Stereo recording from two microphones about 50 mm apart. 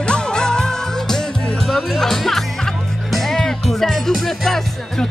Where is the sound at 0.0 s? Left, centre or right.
Centre.